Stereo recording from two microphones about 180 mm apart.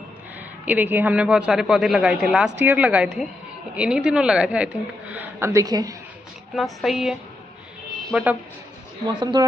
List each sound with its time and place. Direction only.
0.7 s a man's voice: 10° right (ahead or behind)
6.5 s a man's voice: centre (ahead or behind)
9.0 s speech: 25° right (ahead or behind)